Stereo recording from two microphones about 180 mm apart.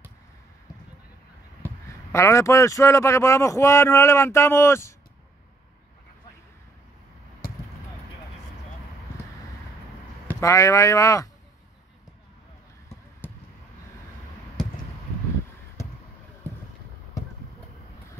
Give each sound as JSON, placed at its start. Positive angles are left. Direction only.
{"t": 2.1, "sound": "speech", "side_deg": 15}
{"t": 10.2, "sound": "speech", "side_deg": 15}